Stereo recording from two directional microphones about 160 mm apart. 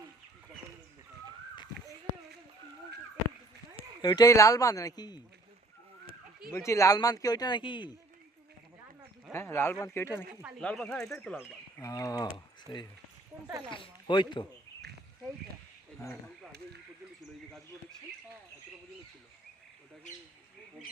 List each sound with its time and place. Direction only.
4.0 s speech: 25° left (ahead or behind)
6.5 s speech: 20° left (ahead or behind)
9.3 s speech: 15° left (ahead or behind)
11.0 s speech: 15° left (ahead or behind)